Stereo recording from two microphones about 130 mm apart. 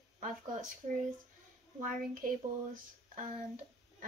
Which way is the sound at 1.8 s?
90° right.